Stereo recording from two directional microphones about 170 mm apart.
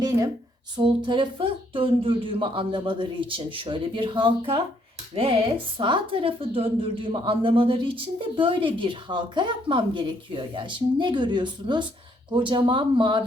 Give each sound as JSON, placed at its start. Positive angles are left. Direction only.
{"t": 0.8, "sound": "a woman's voice", "side_deg": -25}